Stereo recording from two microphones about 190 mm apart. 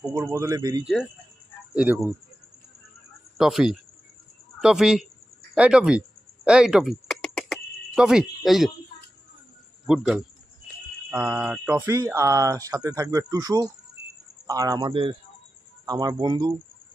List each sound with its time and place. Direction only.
0.0 s speech: 15° right (ahead or behind)
0.8 s speech: centre (ahead or behind)
3.3 s speech: centre (ahead or behind)
5.5 s a sound: 5° right (ahead or behind)
9.8 s speech: centre (ahead or behind); by 16.5 s 25° right (ahead or behind)